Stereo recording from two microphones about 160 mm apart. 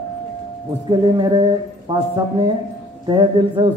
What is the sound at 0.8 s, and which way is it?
Speech, 30° right (ahead or behind).